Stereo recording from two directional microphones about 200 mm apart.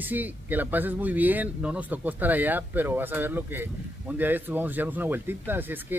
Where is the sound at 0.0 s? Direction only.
10° right (ahead or behind).